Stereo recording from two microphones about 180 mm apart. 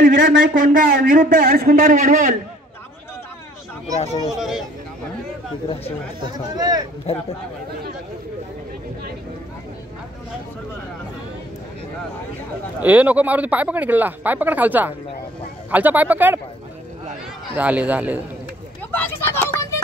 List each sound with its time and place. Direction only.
0.0 s a man's voice: 50° right (ahead or behind)
4.3 s speech: centre (ahead or behind)
6.5 s speech: 20° right (ahead or behind)
12.8 s speech: 10° right (ahead or behind)
17.6 s speech: 5° right (ahead or behind)
18.9 s speech: 10° left (ahead or behind)